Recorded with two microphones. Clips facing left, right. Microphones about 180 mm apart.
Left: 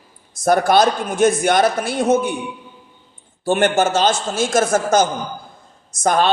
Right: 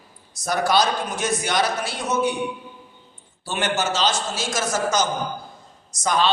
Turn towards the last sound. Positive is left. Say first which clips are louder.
# left 5 dB
turn(degrees=50)  # may be behind; listen again after turning